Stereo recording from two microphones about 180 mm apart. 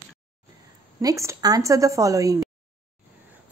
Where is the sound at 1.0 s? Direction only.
15° right (ahead or behind).